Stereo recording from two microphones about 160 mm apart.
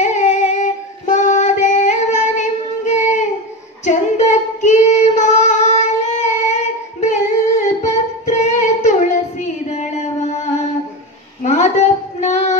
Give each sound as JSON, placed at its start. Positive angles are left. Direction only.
{"t": 0.0, "sound": "female singing", "side_deg": 45}
{"t": 3.8, "sound": "child singing", "side_deg": 45}
{"t": 9.7, "sound": "music", "side_deg": 45}
{"t": 11.4, "sound": "a sound", "side_deg": 45}